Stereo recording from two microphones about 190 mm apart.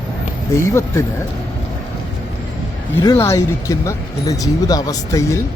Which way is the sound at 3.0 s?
15° left (ahead or behind).